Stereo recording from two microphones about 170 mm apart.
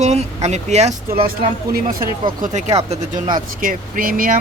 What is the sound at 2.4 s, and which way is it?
Speech, 45° right (ahead or behind).